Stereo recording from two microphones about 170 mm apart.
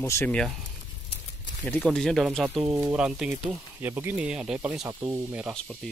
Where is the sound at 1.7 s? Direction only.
5° left (ahead or behind).